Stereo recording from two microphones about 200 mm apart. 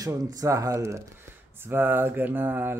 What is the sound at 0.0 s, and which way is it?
Speech, 15° right (ahead or behind).